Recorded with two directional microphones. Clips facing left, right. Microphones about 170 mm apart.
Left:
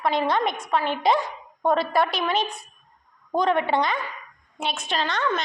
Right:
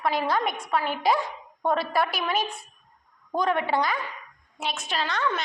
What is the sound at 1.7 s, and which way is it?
Speech, 5° right (ahead or behind).